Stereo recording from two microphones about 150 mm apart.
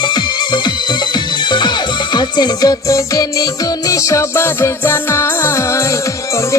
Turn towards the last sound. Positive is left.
turn(degrees=20)  # may be behind; listen again after turning